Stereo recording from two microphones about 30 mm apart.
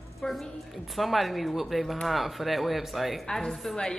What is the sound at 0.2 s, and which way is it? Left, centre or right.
Speech, left.